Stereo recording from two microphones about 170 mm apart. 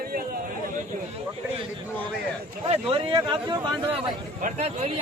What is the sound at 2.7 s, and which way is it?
A man's voice, 30° right (ahead or behind).